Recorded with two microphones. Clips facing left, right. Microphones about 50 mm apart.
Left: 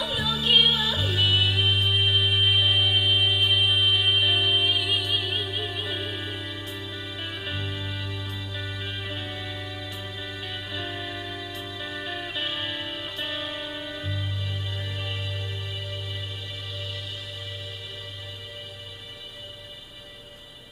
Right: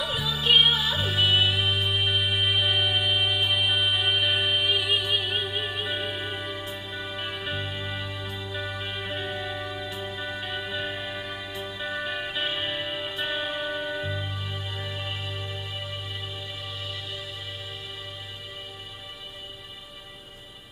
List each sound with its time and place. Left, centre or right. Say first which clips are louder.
0.0 s music: even; centre
3.8 s music: left 2 dB; centre
4.1 s music: left 2 dB; centre
4.4 s music: left 1 dB; right
4.9 s music: right 1 dB; centre
6.6 s music: right 1 dB; centre
7.2 s music: even; right
7.5 s music: right 1 dB; centre
9.3 s music: right 3 dB; right
9.7 s music: right 3 dB; centre
11.2 s music: right 1 dB; right